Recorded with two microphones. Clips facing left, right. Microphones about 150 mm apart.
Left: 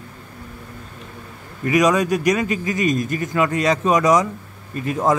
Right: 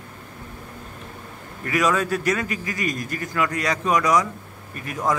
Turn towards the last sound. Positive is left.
turn(degrees=25)  # may be behind; listen again after turning